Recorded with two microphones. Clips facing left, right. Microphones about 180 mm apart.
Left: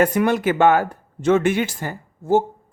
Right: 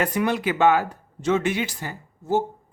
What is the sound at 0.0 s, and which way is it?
Speech, 50° left (ahead or behind).